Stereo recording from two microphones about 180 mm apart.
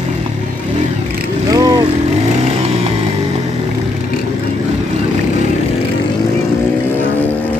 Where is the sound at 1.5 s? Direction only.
20° right (ahead or behind).